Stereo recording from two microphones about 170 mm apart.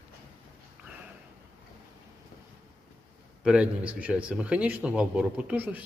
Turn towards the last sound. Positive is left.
turn(degrees=-10)  # may be behind; listen again after turning